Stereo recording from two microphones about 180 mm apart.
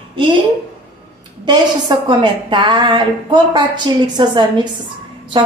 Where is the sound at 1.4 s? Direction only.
25° right (ahead or behind).